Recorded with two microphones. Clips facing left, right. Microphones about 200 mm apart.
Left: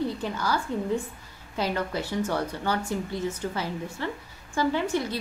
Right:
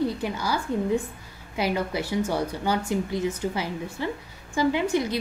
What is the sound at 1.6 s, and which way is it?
Speech, 10° right (ahead or behind).